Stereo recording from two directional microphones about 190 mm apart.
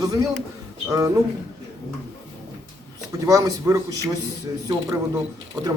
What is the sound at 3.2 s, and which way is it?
Speech, 20° right (ahead or behind).